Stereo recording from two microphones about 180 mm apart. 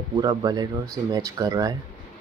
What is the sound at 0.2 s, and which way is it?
Speech, 20° right (ahead or behind).